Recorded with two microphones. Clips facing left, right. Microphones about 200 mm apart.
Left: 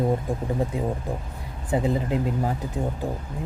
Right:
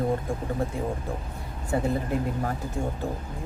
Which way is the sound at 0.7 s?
20° left (ahead or behind).